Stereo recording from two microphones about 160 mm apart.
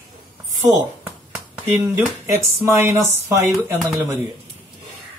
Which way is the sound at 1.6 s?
10° right (ahead or behind).